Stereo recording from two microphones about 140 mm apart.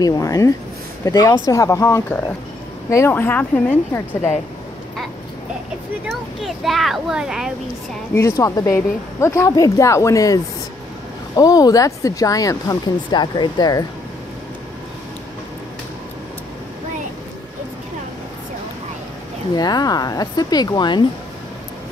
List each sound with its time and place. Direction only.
0.0 s speech: 25° left (ahead or behind)
6.0 s speech: centre (ahead or behind)
8.1 s speech: 20° left (ahead or behind)
19.5 s speech: 30° left (ahead or behind)